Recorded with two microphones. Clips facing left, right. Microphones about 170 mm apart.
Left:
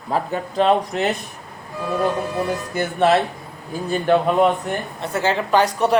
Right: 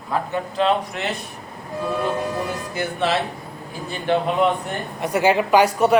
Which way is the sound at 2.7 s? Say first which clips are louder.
Left 6 dB; 50° left (ahead or behind).